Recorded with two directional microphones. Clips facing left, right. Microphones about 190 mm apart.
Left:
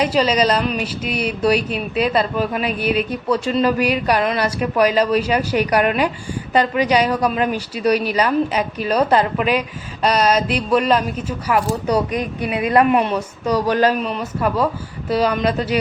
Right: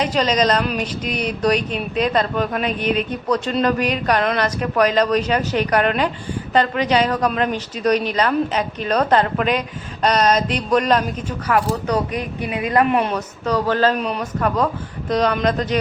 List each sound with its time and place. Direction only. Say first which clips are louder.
0.0 s speech: left 2 dB; 10° left (ahead or behind)
12.4 s a woman's voice: left 2 dB; 30° left (ahead or behind)
13.0 s speech: left 2 dB; 5° left (ahead or behind)
14.0 s speech: even; 5° left (ahead or behind)